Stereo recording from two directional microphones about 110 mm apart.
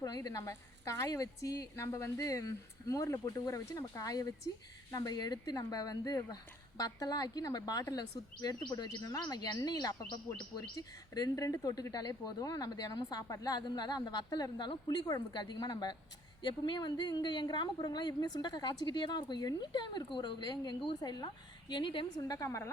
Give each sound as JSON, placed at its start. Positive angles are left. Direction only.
{"t": 0.0, "sound": "a woman's voice", "side_deg": 35}
{"t": 22.2, "sound": "speech", "side_deg": 30}